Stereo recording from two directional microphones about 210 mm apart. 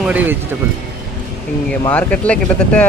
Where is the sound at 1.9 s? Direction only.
5° left (ahead or behind).